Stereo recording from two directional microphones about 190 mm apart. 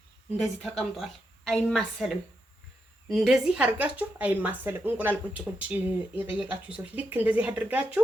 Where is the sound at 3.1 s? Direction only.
Centre (ahead or behind).